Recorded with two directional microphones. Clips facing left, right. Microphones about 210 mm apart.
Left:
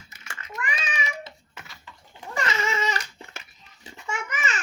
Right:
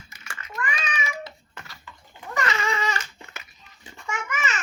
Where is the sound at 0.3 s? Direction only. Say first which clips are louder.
Right 1 dB; 25° left (ahead or behind).